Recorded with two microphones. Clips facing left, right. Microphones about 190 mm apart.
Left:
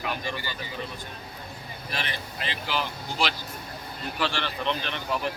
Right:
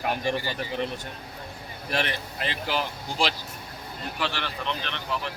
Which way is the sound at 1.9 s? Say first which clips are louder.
Right 6 dB; 55° right (ahead or behind).